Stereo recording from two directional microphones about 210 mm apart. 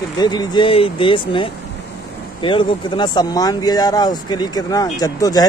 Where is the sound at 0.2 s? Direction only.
20° left (ahead or behind).